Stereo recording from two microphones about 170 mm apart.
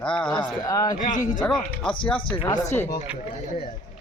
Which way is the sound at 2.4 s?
25° left (ahead or behind).